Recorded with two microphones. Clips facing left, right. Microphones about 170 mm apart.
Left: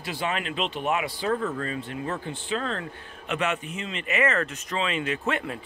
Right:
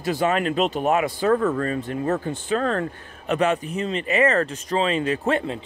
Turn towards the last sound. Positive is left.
turn(degrees=-30)  # may be behind; listen again after turning